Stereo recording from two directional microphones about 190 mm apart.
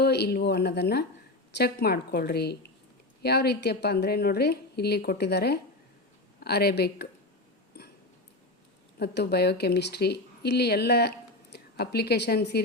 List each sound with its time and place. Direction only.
0.0 s a woman's voice: 60° left (ahead or behind)
7.8 s a sound: 55° left (ahead or behind)
9.0 s a woman's voice: 60° left (ahead or behind)